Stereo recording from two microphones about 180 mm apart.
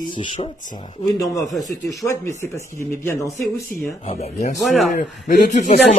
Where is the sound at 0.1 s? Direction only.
30° left (ahead or behind).